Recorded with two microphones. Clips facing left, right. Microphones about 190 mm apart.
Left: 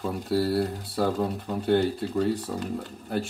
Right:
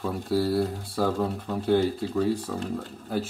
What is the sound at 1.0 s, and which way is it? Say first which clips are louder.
Speech: right 1 dB; 20° left (ahead or behind).